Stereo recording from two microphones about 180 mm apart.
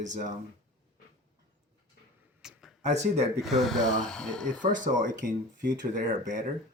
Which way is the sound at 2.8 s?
40° right (ahead or behind).